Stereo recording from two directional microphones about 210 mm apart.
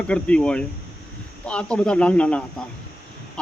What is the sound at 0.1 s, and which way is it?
Speech, 5° left (ahead or behind).